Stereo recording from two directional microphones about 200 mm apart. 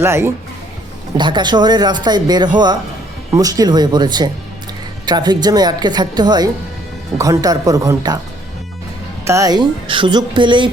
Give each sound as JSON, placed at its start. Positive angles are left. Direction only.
{"t": 0.0, "sound": "speech", "side_deg": -10}
{"t": 9.2, "sound": "speech", "side_deg": -15}